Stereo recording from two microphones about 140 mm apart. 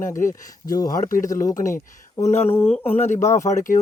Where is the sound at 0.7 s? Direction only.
25° left (ahead or behind).